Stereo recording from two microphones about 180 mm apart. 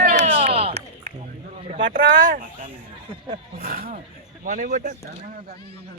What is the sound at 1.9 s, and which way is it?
Speech, 50° right (ahead or behind).